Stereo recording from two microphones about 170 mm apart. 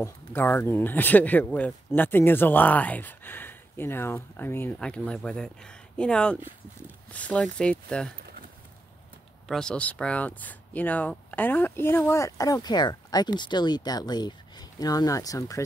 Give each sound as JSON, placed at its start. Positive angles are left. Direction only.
{"t": 0.0, "sound": "speech", "side_deg": 10}
{"t": 9.5, "sound": "speech", "side_deg": 5}